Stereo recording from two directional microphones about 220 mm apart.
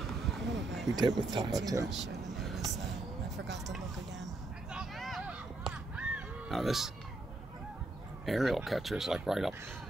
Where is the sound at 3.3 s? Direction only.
50° right (ahead or behind).